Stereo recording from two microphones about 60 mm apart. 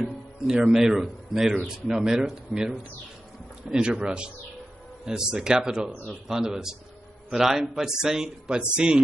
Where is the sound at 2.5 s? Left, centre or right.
Centre.